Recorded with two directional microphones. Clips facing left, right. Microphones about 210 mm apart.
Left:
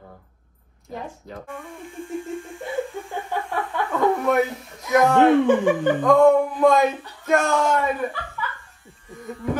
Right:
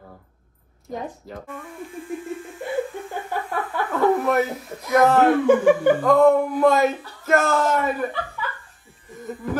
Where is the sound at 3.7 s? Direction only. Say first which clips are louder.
Right 2 dB; centre (ahead or behind).